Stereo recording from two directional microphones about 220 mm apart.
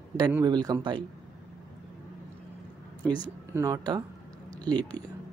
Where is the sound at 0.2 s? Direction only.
15° right (ahead or behind).